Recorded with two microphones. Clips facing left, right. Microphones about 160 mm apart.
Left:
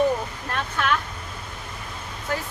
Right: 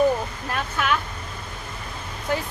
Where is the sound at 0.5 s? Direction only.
10° right (ahead or behind).